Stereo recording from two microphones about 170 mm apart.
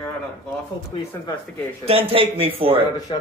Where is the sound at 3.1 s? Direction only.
30° left (ahead or behind).